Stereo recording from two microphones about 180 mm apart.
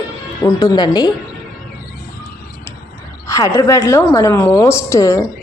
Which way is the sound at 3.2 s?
15° left (ahead or behind).